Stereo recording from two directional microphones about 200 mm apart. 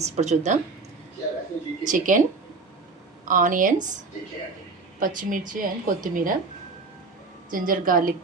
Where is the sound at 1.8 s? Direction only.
40° right (ahead or behind).